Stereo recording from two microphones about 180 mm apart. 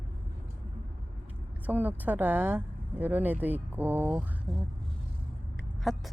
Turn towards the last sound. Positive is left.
turn(degrees=0)  # may be behind; listen again after turning